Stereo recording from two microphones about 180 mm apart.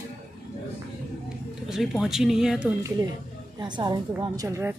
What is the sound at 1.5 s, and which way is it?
Speech, centre (ahead or behind).